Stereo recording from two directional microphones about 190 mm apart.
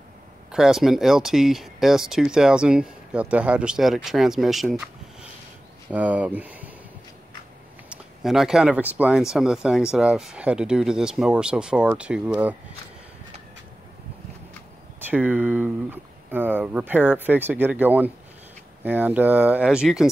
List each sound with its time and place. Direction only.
0.5 s speech: 5° right (ahead or behind)
7.9 s speech: centre (ahead or behind)
15.0 s speech: 10° right (ahead or behind)